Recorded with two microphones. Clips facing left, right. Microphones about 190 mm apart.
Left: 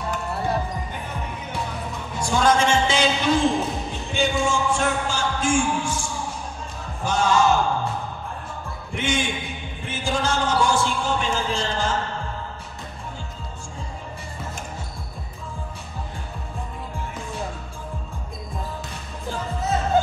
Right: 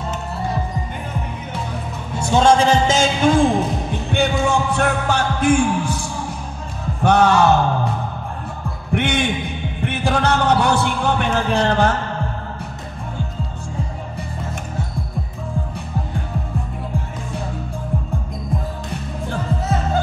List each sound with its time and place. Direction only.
2.1 s a man's voice: 25° right (ahead or behind); by 3.4 s 45° right (ahead or behind)
4.1 s music: 60° right (ahead or behind)
7.0 s a sound: 65° right (ahead or behind)
8.9 s heart sounds: 65° right (ahead or behind)
9.8 s music: 65° right (ahead or behind)